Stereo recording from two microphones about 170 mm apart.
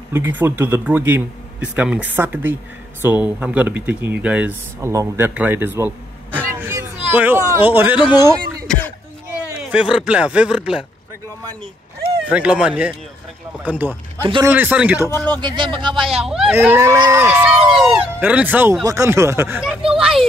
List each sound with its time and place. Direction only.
0.1 s speech: 10° right (ahead or behind)
6.5 s children playing: 15° right (ahead or behind)
7.1 s speech: 10° right (ahead or behind)
8.6 s a sound: 10° left (ahead or behind)
9.6 s speech: 5° right (ahead or behind)
12.3 s speech: 5° right (ahead or behind)
15.4 s speech: 30° right (ahead or behind)
15.9 s speech: centre (ahead or behind)
19.9 s speech: 5° right (ahead or behind)